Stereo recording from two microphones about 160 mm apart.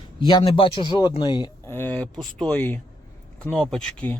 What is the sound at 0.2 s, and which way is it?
Speech, 30° left (ahead or behind).